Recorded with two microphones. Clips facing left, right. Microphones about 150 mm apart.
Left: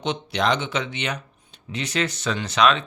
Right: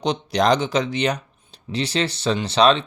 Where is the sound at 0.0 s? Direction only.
40° right (ahead or behind).